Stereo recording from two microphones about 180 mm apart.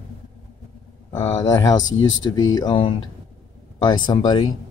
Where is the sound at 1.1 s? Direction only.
20° left (ahead or behind).